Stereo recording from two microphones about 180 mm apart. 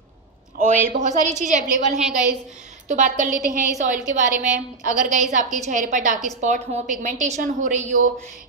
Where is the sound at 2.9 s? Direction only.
45° right (ahead or behind).